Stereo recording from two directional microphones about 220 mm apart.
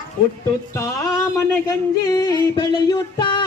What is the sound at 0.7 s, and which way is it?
Music, 10° left (ahead or behind).